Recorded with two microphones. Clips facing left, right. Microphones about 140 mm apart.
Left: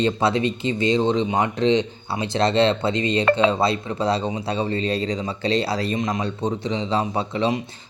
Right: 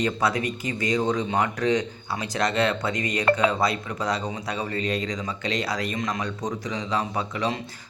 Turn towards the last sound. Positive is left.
turn(degrees=25)  # may be behind; listen again after turning